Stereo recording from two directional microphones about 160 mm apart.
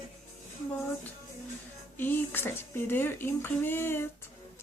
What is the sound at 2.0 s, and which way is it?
Speech, 10° left (ahead or behind).